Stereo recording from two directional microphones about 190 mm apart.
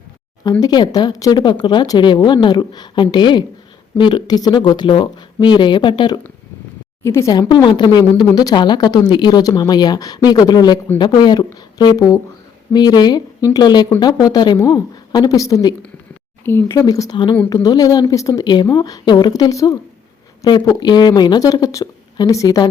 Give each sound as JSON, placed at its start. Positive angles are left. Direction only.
{"t": 0.6, "sound": "speech", "side_deg": 20}